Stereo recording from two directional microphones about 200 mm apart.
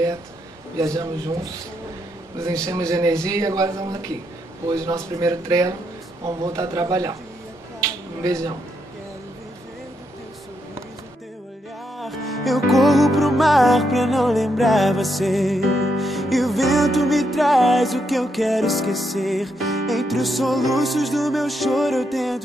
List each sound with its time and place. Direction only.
0.7 s speech: 15° right (ahead or behind)
2.6 s speech: 15° right (ahead or behind)
7.8 s a sound: 15° right (ahead or behind)
12.0 s music: centre (ahead or behind)